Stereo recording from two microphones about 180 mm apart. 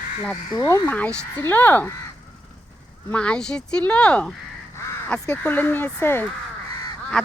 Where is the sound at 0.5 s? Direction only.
15° left (ahead or behind).